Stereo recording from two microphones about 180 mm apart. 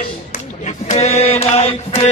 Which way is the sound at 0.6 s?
35° left (ahead or behind).